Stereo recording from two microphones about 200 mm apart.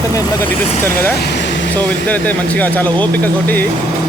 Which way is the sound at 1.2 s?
60° left (ahead or behind).